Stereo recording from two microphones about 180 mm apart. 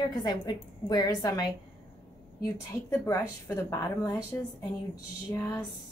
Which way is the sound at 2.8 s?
15° left (ahead or behind).